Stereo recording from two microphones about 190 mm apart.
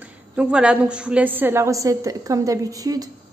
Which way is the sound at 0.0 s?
5° right (ahead or behind).